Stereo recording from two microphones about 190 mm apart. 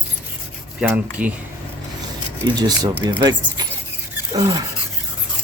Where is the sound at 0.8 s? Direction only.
5° right (ahead or behind).